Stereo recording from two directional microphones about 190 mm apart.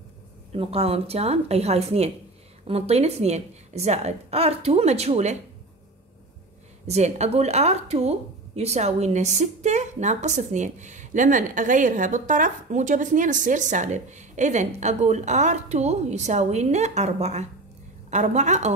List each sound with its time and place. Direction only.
0.5 s a woman's voice: 30° right (ahead or behind)
6.9 s a woman's voice: 35° right (ahead or behind)